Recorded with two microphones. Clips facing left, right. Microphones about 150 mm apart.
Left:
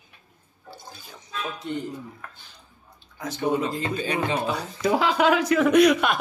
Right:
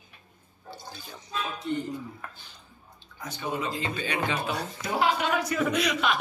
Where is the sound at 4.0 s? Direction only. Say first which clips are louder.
Left 5 dB; 35° left (ahead or behind).